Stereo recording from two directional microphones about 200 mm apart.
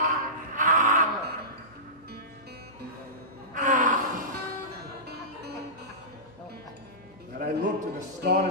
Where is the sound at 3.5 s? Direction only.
40° right (ahead or behind).